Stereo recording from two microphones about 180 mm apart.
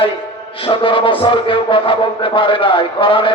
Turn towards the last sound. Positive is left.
turn(degrees=30)  # may be behind; listen again after turning